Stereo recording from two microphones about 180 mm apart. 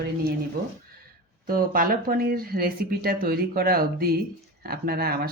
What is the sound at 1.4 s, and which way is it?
Speech, 55° right (ahead or behind).